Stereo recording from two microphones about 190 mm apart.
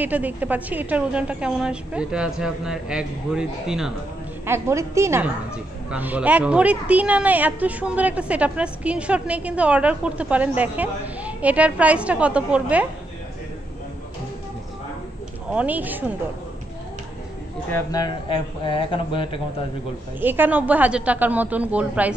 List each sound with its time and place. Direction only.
0.0 s a woman's voice: 10° right (ahead or behind)
4.5 s a woman's voice: 15° right (ahead or behind)
15.5 s a woman's voice: 10° right (ahead or behind)
17.6 s speech: 15° left (ahead or behind)
20.2 s a woman's voice: 10° right (ahead or behind)